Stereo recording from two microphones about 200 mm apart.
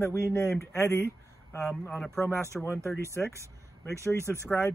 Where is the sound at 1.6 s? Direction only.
Centre (ahead or behind).